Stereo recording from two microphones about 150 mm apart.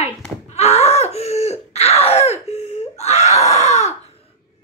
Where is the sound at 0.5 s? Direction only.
45° left (ahead or behind).